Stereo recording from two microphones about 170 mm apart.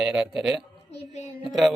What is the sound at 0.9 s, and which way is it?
Speech, 40° left (ahead or behind).